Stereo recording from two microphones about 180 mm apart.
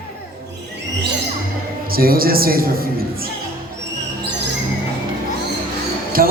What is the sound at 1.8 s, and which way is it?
A woman's voice, 55° right (ahead or behind).